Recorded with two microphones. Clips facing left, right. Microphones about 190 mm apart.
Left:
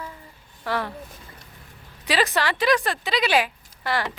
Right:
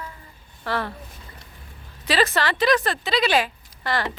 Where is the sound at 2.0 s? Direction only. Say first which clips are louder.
Right 1 dB; 15° left (ahead or behind).